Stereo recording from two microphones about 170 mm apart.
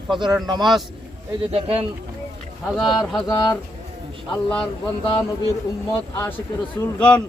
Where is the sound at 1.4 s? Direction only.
35° right (ahead or behind).